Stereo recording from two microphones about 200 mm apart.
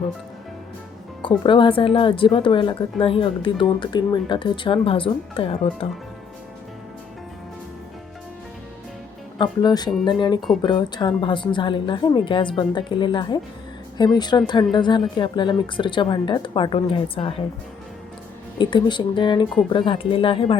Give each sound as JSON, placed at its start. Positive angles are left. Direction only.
{"t": 1.5, "sound": "a woman's voice", "side_deg": 25}
{"t": 9.4, "sound": "a woman's voice", "side_deg": 20}
{"t": 18.6, "sound": "a woman's voice", "side_deg": 25}